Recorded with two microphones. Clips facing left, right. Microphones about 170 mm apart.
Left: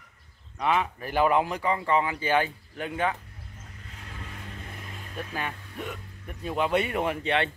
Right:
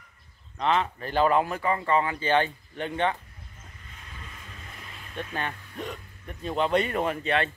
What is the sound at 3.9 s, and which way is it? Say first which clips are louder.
Vehicle: left 4 dB; 70° left (ahead or behind).